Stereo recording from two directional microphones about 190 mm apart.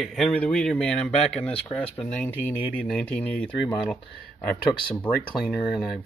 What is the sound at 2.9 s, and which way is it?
Speech, 5° left (ahead or behind).